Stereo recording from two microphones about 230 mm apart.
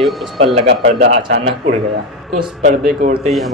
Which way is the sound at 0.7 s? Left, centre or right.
Right.